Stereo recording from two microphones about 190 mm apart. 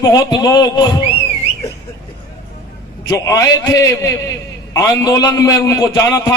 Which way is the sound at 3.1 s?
15° left (ahead or behind).